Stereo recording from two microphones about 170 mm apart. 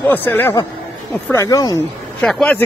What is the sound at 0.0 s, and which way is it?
Speech, 10° left (ahead or behind).